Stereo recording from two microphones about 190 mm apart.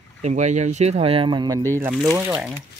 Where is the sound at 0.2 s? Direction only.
40° right (ahead or behind).